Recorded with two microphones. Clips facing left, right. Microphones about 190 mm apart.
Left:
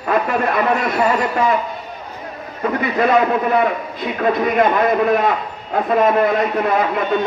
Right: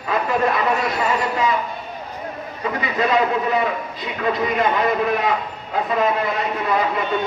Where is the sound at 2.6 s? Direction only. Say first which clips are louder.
Left 5 dB; 55° left (ahead or behind).